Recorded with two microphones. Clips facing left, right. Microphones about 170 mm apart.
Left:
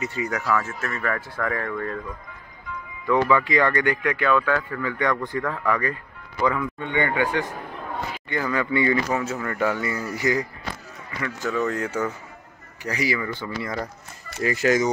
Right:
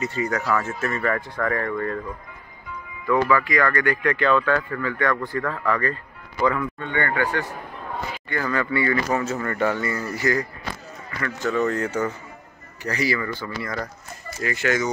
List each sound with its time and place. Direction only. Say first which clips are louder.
0.0 s speech: right 2 dB; 10° left (ahead or behind)
0.6 s speech: right 3 dB; centre (ahead or behind)
3.1 s speech: even; 20° left (ahead or behind)
8.3 s speech: even; 15° left (ahead or behind)
9.1 s speech: right 2 dB; 5° left (ahead or behind); by 13.8 s 20° left (ahead or behind)
14.4 s speech: left 3 dB; 35° left (ahead or behind)